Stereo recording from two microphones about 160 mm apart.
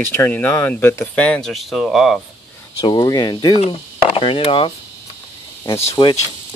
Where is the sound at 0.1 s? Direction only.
15° left (ahead or behind).